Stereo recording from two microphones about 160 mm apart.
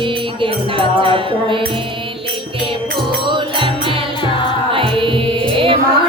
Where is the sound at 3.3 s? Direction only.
30° right (ahead or behind).